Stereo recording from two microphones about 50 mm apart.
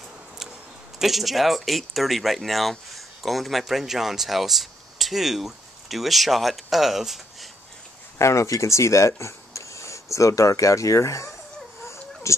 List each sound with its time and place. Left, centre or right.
0.9 s speech: centre
8.2 s speech: left
11.8 s a sound: left